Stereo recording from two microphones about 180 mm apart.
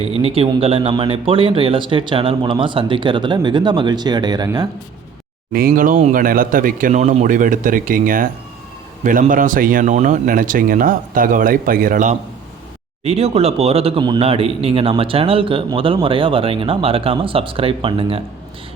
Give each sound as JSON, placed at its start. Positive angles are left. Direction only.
{"t": 0.0, "sound": "speech", "side_deg": -35}
{"t": 5.5, "sound": "speech", "side_deg": -55}
{"t": 13.1, "sound": "speech", "side_deg": -35}